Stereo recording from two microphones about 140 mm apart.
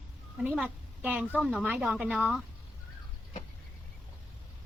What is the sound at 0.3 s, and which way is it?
A woman's voice, 5° right (ahead or behind).